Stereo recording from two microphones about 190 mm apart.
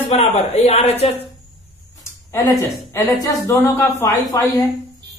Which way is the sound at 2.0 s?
15° left (ahead or behind).